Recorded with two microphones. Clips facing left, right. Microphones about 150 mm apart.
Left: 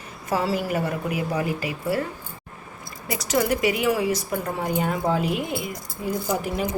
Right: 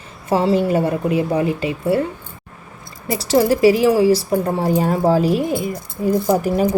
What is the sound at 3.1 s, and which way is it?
A woman's voice, 30° right (ahead or behind).